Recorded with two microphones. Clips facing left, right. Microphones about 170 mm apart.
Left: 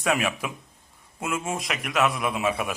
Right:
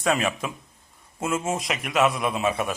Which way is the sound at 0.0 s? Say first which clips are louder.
Right 1 dB; 10° left (ahead or behind).